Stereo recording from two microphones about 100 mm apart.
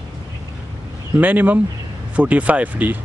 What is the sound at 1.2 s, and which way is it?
Speech, 15° right (ahead or behind).